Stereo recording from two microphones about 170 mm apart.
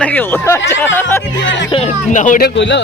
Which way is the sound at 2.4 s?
90° left.